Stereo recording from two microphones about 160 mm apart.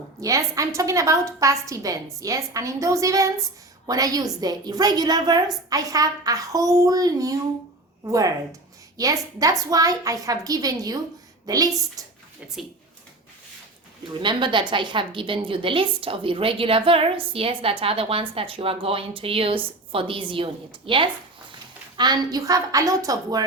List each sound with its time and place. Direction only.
0.2 s a woman's voice: 20° right (ahead or behind)
14.2 s a woman's voice: 30° right (ahead or behind)